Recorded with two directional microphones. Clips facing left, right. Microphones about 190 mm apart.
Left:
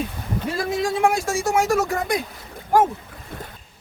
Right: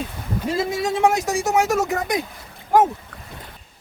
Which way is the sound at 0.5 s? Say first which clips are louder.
Right 1 dB; 20° right (ahead or behind).